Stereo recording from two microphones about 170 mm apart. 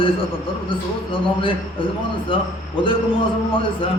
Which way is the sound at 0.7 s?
30° left (ahead or behind).